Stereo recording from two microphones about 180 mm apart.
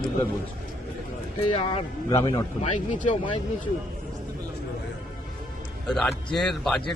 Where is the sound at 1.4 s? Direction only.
30° left (ahead or behind).